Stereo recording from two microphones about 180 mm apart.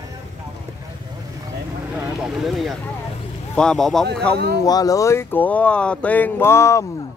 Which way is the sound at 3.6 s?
5° left (ahead or behind).